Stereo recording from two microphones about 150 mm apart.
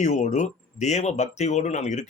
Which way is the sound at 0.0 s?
50° left (ahead or behind).